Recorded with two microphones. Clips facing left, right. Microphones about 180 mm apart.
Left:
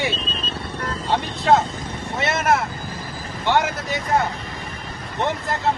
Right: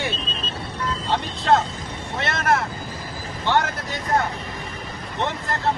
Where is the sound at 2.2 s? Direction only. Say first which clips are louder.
Left 2 dB; 10° left (ahead or behind).